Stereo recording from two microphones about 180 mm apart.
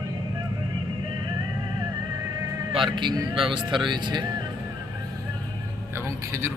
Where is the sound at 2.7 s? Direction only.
25° right (ahead or behind).